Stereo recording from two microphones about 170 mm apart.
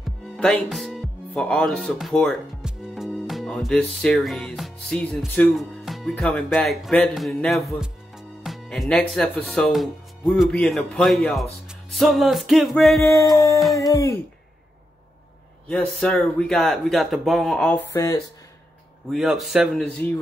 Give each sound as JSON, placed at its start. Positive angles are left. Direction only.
{"t": 0.0, "sound": "speech", "side_deg": 5}
{"t": 13.0, "sound": "a sound", "side_deg": 15}
{"t": 15.7, "sound": "speech", "side_deg": 5}
{"t": 19.0, "sound": "speech", "side_deg": 0}